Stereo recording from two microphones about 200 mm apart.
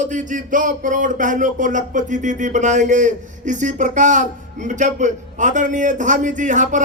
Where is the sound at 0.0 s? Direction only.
40° right (ahead or behind).